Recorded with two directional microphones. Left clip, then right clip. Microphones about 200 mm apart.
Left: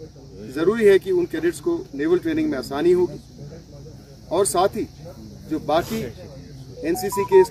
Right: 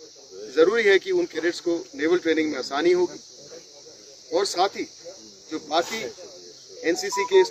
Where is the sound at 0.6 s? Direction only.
Centre (ahead or behind).